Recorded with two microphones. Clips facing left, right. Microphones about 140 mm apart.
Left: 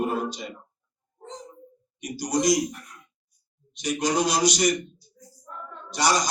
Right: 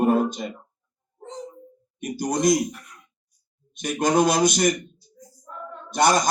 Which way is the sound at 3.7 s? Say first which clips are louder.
Right 4 dB; 55° right (ahead or behind).